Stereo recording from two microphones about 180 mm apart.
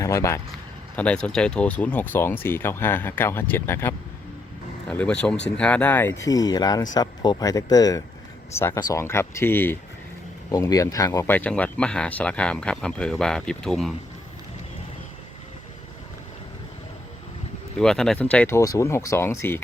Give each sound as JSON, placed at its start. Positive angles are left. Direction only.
{"t": 0.0, "sound": "speech", "side_deg": 15}
{"t": 17.7, "sound": "speech", "side_deg": 5}